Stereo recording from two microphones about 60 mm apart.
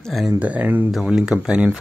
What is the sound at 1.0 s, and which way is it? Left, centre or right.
Speech, centre.